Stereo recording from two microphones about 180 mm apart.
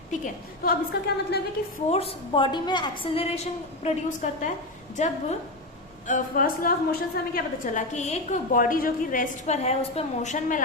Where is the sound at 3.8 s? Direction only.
45° left (ahead or behind).